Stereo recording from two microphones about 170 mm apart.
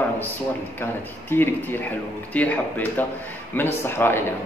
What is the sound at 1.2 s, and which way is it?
A man's voice, 10° left (ahead or behind).